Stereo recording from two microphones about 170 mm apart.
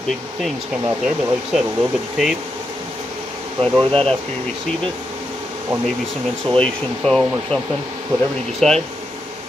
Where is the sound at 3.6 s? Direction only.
35° right (ahead or behind).